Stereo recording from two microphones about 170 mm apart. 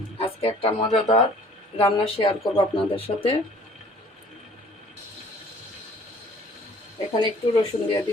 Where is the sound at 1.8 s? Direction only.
30° left (ahead or behind).